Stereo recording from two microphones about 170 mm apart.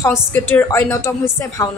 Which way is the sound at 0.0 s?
15° left (ahead or behind).